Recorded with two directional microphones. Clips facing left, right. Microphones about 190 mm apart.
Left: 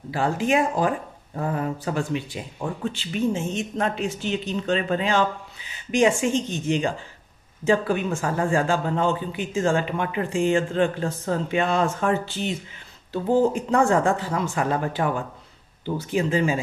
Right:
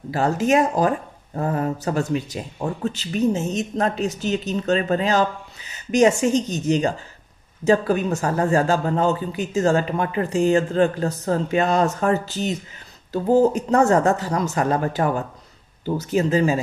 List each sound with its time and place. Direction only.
0.1 s speech: 40° right (ahead or behind)